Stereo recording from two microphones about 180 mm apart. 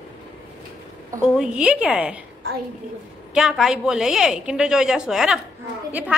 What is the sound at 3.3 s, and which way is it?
A woman's voice, 5° right (ahead or behind).